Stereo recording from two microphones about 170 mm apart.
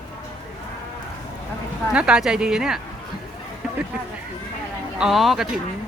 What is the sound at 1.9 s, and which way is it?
Speech, 5° right (ahead or behind).